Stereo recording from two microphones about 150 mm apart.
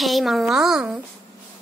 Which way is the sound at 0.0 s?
Centre (ahead or behind).